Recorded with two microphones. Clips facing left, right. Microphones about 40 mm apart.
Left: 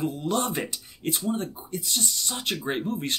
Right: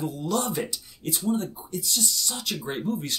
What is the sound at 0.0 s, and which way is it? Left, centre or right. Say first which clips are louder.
Speech: left 1 dB; left.